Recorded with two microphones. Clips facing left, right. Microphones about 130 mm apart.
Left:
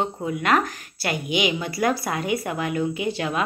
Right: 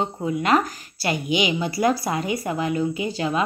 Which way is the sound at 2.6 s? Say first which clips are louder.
Right 2 dB; 60° left (ahead or behind).